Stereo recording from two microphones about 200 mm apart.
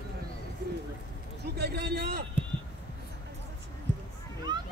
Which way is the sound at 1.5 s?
50° right (ahead or behind).